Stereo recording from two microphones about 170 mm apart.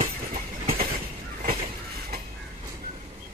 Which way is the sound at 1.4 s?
55° right (ahead or behind).